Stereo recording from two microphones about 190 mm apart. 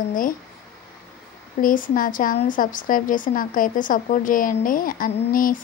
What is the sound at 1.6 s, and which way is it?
A woman's voice, 45° left (ahead or behind).